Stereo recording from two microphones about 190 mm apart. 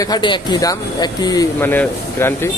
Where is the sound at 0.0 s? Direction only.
25° left (ahead or behind).